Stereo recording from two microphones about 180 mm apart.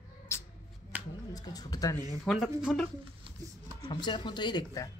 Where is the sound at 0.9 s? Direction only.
10° right (ahead or behind).